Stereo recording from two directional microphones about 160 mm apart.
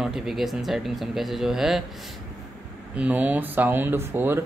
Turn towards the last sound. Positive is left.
turn(degrees=-15)  # may be behind; listen again after turning